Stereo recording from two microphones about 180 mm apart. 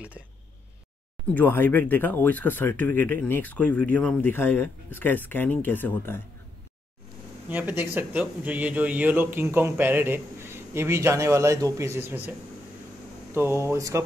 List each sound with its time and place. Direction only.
1.2 s speech: 10° left (ahead or behind)
7.4 s a man's voice: 10° right (ahead or behind)